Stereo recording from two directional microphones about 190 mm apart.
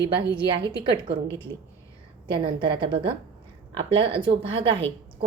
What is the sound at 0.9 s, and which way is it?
A woman's voice, 25° right (ahead or behind).